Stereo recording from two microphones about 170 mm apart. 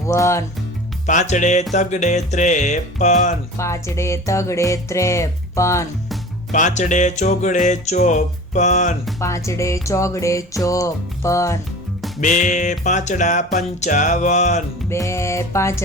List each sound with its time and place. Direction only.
0.1 s speech: 15° left (ahead or behind)
1.0 s music: 45° left (ahead or behind)
3.6 s speech: 15° left (ahead or behind)
6.5 s music: 45° left (ahead or behind)
9.2 s speech: 15° left (ahead or behind)
12.2 s music: 45° left (ahead or behind)
14.8 s speech: 15° left (ahead or behind)